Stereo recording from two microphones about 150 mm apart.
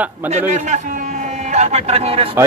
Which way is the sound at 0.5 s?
50° right (ahead or behind).